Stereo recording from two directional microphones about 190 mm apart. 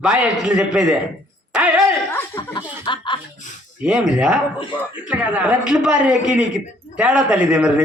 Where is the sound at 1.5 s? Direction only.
5° right (ahead or behind).